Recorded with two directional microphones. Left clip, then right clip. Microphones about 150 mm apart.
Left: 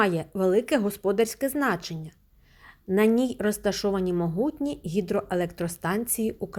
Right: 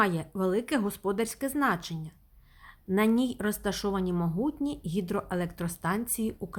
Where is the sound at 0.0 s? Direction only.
15° left (ahead or behind).